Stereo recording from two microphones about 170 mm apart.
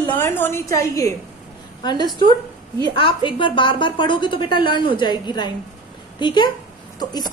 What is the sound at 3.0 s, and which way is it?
A woman's voice, 30° left (ahead or behind).